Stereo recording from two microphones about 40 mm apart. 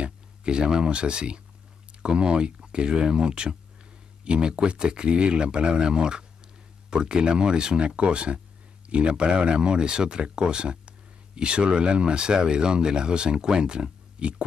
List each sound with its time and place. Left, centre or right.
0.0 s speech: right